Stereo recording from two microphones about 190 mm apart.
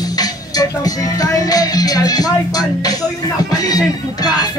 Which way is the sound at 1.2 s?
20° left (ahead or behind).